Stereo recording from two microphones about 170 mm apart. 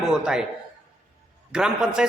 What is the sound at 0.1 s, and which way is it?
Speech, 5° right (ahead or behind).